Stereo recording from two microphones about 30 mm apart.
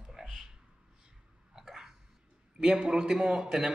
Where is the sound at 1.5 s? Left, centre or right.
Centre.